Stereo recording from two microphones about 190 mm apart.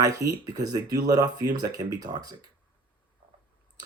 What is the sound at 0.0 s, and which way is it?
Speech, 15° right (ahead or behind).